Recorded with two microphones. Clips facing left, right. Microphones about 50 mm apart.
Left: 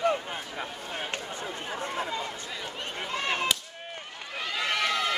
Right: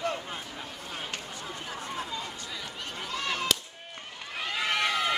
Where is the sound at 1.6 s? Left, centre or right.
Left.